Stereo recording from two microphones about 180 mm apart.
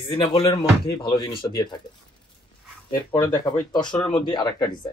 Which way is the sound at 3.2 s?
20° left (ahead or behind).